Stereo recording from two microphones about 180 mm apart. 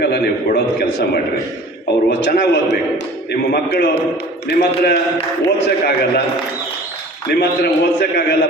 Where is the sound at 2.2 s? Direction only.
70° left (ahead or behind).